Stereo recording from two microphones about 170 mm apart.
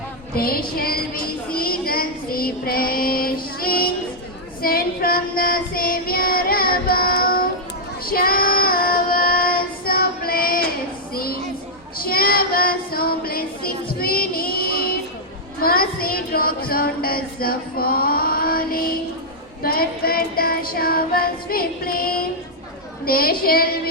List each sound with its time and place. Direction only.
0.3 s a woman's voice: 60° left (ahead or behind)
4.6 s child singing: 60° left (ahead or behind)
11.1 s a sound: 60° left (ahead or behind)
11.9 s child singing: 60° left (ahead or behind)
19.6 s music: 60° left (ahead or behind)
23.0 s a sound: 60° left (ahead or behind)